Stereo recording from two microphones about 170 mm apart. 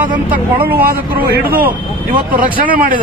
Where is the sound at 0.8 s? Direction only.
60° right (ahead or behind).